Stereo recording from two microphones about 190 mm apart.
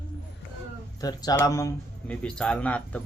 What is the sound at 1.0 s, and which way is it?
Speech, 20° left (ahead or behind).